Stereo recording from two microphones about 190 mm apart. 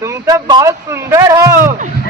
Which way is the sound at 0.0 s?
15° right (ahead or behind).